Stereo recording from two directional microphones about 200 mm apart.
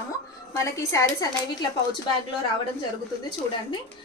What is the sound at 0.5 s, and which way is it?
Speech, 15° left (ahead or behind).